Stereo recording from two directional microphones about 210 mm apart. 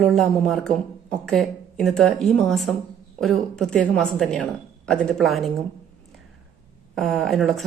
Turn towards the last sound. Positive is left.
turn(degrees=0)  # may be behind; listen again after turning